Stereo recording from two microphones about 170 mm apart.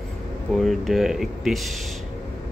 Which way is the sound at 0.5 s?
Centre (ahead or behind).